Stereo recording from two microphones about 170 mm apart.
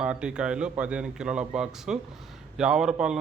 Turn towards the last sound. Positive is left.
turn(degrees=-5)  # may be behind; listen again after turning